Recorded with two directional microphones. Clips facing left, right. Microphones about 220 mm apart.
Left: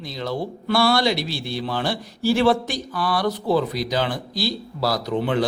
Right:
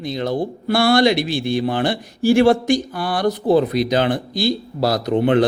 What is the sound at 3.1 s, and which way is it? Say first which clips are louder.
Speech: right 4 dB; 50° right (ahead or behind).